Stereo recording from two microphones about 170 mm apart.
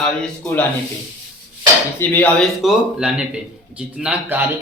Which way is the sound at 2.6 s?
5° right (ahead or behind).